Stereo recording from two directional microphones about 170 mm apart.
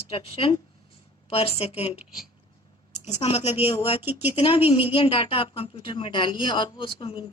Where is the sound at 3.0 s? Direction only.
35° left (ahead or behind).